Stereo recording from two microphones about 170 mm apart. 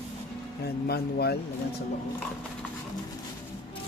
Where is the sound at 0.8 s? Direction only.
65° left (ahead or behind).